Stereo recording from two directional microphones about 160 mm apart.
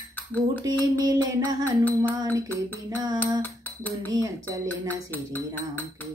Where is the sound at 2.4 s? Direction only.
10° left (ahead or behind).